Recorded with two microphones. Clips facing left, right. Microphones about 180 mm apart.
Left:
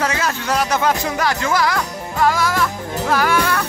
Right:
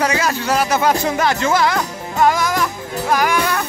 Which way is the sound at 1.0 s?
25° right (ahead or behind).